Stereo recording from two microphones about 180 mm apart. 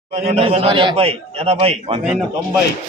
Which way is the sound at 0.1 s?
35° right (ahead or behind).